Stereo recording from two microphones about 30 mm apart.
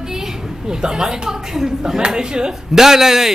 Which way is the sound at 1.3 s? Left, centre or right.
Centre.